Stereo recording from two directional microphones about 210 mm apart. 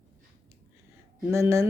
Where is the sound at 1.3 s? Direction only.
15° right (ahead or behind).